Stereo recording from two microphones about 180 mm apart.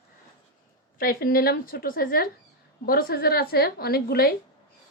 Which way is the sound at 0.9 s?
55° left (ahead or behind).